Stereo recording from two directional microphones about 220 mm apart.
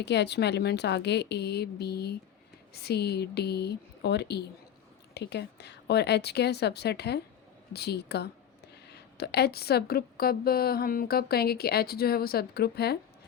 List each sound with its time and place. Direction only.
0.0 s a woman's voice: 50° left (ahead or behind)